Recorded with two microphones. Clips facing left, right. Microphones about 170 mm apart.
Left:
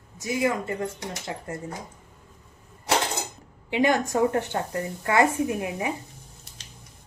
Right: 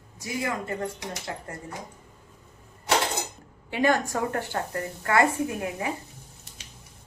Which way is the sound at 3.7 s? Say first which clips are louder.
Left 2 dB; 20° left (ahead or behind).